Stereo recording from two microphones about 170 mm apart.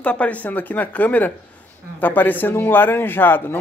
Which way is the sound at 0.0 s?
10° left (ahead or behind).